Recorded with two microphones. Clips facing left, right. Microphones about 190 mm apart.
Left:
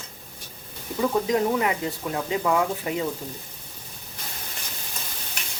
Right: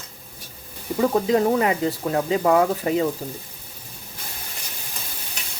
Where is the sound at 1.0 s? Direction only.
35° right (ahead or behind).